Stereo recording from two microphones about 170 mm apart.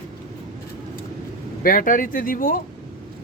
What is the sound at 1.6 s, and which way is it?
Speech, 55° left (ahead or behind).